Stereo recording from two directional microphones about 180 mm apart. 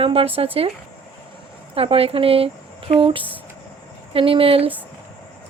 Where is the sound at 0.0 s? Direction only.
30° right (ahead or behind).